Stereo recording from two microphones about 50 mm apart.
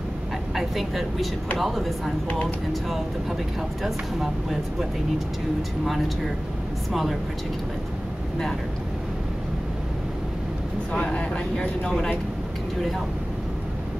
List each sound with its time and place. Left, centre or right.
0.6 s speech: centre
6.9 s speech: centre
11.0 s a man's voice: left